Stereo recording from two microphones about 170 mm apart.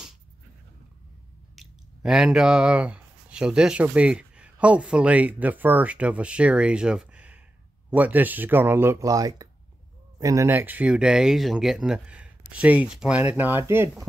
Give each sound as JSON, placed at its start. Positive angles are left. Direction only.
{"t": 1.5, "sound": "speech", "side_deg": 0}